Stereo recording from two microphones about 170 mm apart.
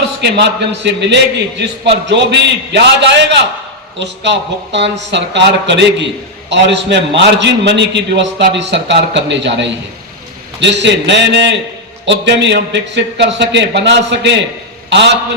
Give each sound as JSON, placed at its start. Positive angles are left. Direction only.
{"t": 0.2, "sound": "a man's voice", "side_deg": -85}